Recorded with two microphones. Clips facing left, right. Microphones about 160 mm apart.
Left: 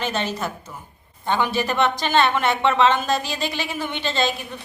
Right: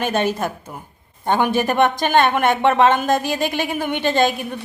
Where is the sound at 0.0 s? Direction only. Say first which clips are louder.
Right 5 dB; 50° right (ahead or behind).